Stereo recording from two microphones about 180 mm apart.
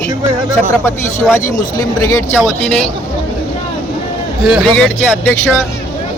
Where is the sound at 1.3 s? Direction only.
15° left (ahead or behind).